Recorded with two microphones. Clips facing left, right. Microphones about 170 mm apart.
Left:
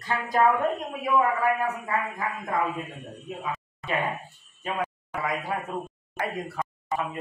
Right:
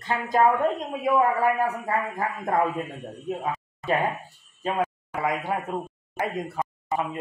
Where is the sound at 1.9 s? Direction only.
40° right (ahead or behind).